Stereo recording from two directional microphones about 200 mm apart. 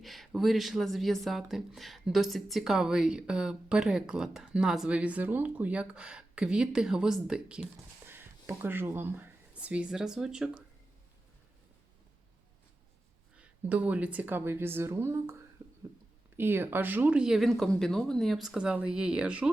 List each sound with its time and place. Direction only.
0.0 s speech: centre (ahead or behind)
13.3 s speech: 5° right (ahead or behind)
16.4 s speech: 10° right (ahead or behind)